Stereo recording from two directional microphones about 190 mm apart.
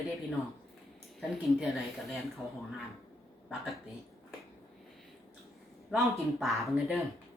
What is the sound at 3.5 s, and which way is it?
Speech, centre (ahead or behind).